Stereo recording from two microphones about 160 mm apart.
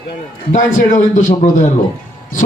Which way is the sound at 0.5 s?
50° left (ahead or behind).